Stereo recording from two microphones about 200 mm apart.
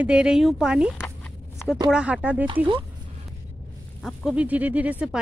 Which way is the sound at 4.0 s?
Centre (ahead or behind).